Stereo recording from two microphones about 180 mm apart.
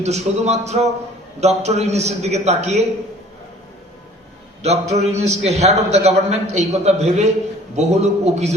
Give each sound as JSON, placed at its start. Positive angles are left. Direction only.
{"t": 0.0, "sound": "a man's voice", "side_deg": -40}
{"t": 4.6, "sound": "a man's voice", "side_deg": -35}